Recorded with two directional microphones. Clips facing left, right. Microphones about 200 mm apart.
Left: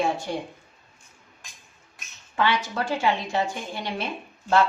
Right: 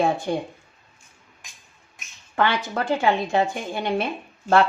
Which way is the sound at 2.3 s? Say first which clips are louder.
Right 2 dB; 55° right (ahead or behind).